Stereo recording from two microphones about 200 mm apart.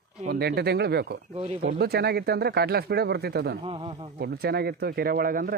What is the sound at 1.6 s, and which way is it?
Speech, 45° right (ahead or behind).